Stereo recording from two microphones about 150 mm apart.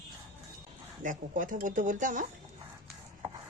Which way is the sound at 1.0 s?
60° right (ahead or behind).